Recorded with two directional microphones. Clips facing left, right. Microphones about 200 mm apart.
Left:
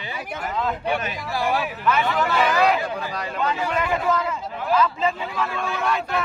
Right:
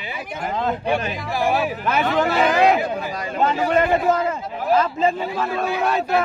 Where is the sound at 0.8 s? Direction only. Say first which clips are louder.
Right 3 dB; 25° right (ahead or behind).